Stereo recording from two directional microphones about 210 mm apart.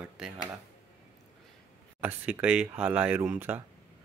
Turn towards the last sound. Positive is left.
turn(degrees=-10)  # may be behind; listen again after turning